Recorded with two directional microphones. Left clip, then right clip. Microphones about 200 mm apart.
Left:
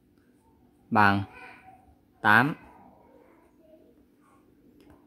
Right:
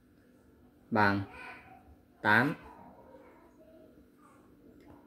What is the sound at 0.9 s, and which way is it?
Speech, 35° left (ahead or behind).